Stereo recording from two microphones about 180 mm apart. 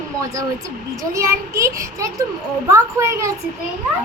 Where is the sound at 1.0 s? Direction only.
15° right (ahead or behind).